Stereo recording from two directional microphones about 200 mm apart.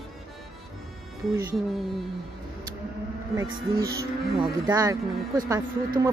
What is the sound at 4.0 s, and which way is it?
Speech, 20° right (ahead or behind).